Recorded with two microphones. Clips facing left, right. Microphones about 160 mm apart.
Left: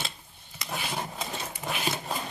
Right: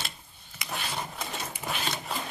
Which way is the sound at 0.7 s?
5° left (ahead or behind).